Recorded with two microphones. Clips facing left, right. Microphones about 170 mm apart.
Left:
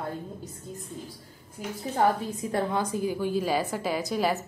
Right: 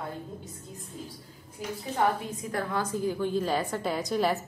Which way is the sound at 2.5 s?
20° left (ahead or behind).